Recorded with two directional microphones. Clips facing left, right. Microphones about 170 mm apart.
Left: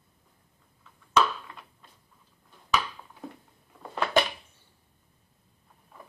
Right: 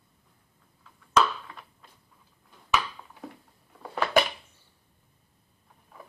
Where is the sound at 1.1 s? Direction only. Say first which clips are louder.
Right 1 dB; centre (ahead or behind).